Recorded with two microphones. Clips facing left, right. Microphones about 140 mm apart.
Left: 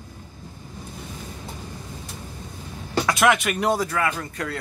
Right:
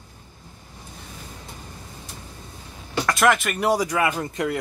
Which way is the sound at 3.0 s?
Centre (ahead or behind).